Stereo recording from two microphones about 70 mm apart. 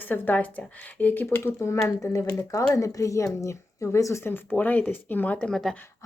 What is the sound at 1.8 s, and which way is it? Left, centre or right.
Speech, left.